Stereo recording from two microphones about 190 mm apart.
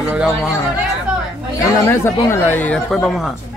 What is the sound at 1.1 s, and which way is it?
Chatter, 5° right (ahead or behind).